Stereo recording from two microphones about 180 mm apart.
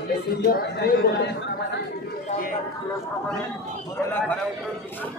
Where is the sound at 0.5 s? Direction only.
55° left (ahead or behind).